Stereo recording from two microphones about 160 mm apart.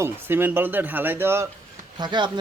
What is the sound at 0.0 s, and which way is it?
Speech, 15° right (ahead or behind).